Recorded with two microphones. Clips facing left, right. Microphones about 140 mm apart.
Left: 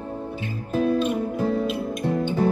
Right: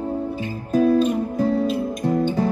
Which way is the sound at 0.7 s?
40° right (ahead or behind).